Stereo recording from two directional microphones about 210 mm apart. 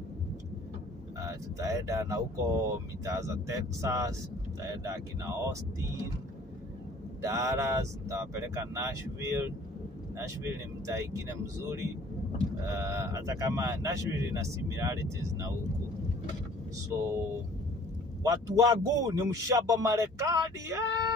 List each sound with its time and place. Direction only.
1.2 s speech: 15° right (ahead or behind)
7.2 s speech: 15° right (ahead or behind)
16.9 s speech: 15° right (ahead or behind)
18.2 s speech: 15° right (ahead or behind)